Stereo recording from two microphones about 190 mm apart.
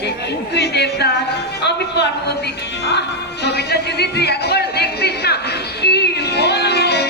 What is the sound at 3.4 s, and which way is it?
A woman's voice, 60° left (ahead or behind).